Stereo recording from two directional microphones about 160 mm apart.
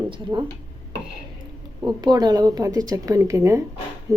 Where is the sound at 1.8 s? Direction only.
25° right (ahead or behind).